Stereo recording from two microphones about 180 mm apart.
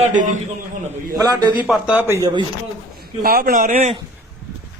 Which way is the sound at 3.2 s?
50° right (ahead or behind).